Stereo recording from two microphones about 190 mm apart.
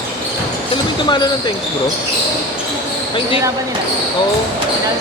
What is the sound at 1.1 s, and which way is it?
Speech, 20° left (ahead or behind).